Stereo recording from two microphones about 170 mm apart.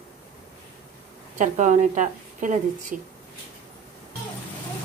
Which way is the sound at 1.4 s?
50° right (ahead or behind).